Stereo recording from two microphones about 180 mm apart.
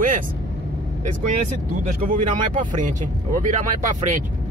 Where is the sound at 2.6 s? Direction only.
45° right (ahead or behind).